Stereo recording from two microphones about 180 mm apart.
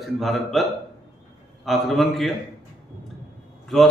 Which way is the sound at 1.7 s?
Centre (ahead or behind).